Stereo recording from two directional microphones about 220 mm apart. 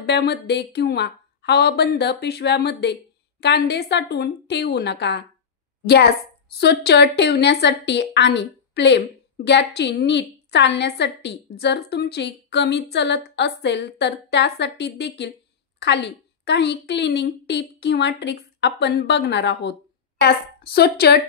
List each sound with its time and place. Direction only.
0.0 s a woman's voice: 50° left (ahead or behind)